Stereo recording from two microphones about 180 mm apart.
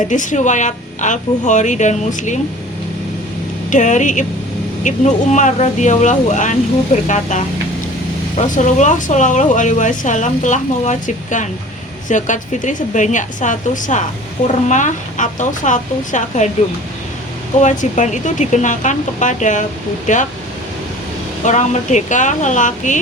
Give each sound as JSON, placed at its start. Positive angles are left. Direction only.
{"t": 0.1, "sound": "speech", "side_deg": 45}
{"t": 3.7, "sound": "speech", "side_deg": 40}
{"t": 17.6, "sound": "speech", "side_deg": 40}
{"t": 21.4, "sound": "speech", "side_deg": 40}